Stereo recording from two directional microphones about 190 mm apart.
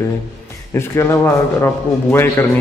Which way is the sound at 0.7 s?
15° left (ahead or behind).